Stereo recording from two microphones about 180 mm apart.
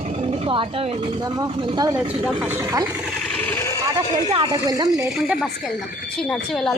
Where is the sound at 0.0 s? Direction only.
35° right (ahead or behind).